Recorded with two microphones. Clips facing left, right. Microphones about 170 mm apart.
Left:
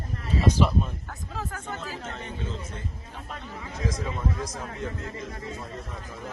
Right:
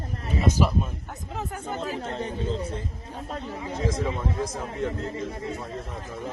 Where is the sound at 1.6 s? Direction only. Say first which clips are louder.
Right 5 dB; 30° right (ahead or behind).